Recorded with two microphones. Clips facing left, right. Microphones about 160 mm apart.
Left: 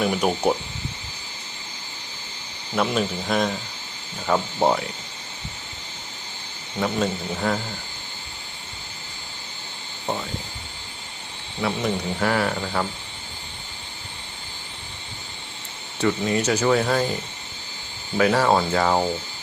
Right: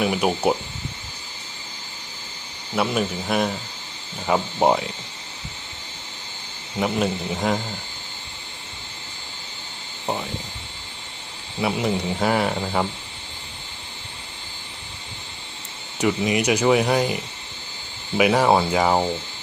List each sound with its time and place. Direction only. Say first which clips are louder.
0.0 s speech: right 1 dB; 5° right (ahead or behind)
2.7 s speech: even; 5° right (ahead or behind)
4.3 s speech: right 1 dB; 20° right (ahead or behind)
6.7 s speech: right 1 dB; 15° right (ahead or behind)
11.6 s speech: right 2 dB; 20° right (ahead or behind)
16.0 s speech: right 1 dB; 15° right (ahead or behind)
18.2 s speech: right 1 dB; 15° right (ahead or behind)